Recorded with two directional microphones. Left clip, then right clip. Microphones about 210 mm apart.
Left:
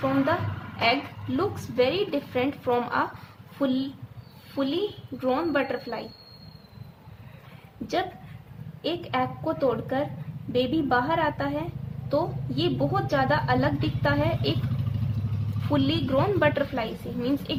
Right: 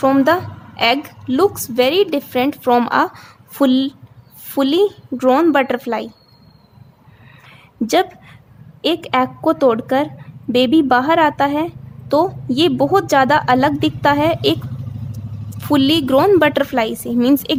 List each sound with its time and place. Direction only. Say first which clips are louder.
0.8 s a woman's voice: right 8 dB; 50° right (ahead or behind)
8.8 s a woman's voice: right 11 dB; 50° right (ahead or behind)
15.7 s a woman's voice: right 11 dB; 50° right (ahead or behind)